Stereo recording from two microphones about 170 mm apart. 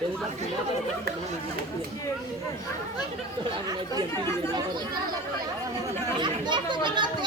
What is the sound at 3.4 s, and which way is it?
Speech, 25° right (ahead or behind).